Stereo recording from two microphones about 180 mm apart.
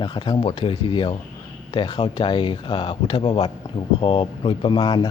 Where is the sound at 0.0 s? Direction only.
25° left (ahead or behind).